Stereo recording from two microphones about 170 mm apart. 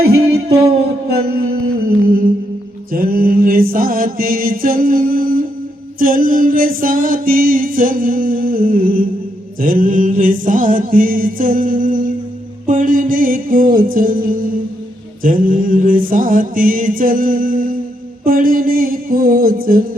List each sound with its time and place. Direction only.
0.0 s music: 70° right (ahead or behind)
2.9 s music: 60° right (ahead or behind)
9.6 s mantra: 55° right (ahead or behind)
12.6 s music: 55° right (ahead or behind)